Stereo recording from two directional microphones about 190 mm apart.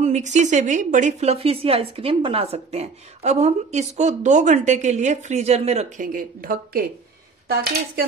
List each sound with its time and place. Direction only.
0.0 s a woman's voice: 40° right (ahead or behind)
6.1 s speech: 50° right (ahead or behind)